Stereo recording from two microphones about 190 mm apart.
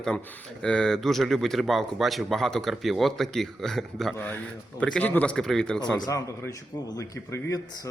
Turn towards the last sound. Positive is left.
turn(degrees=20)  # may be behind; listen again after turning